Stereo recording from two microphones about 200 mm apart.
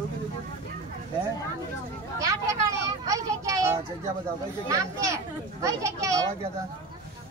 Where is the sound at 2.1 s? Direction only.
15° right (ahead or behind).